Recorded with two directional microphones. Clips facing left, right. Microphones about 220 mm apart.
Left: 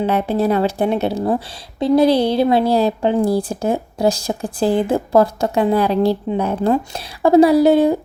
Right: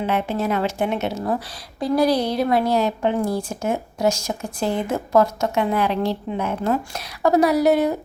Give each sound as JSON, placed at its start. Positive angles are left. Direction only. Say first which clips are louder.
{"t": 0.0, "sound": "a woman's voice", "louder": "left 5 dB", "side_deg": 35}